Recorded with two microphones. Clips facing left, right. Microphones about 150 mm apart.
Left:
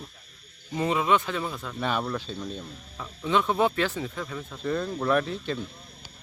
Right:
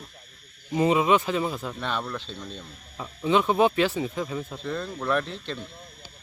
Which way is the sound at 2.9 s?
10° right (ahead or behind).